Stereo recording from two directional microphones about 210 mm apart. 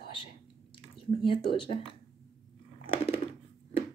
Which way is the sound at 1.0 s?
25° left (ahead or behind).